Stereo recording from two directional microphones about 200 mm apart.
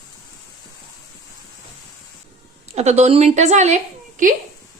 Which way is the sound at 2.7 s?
35° right (ahead or behind).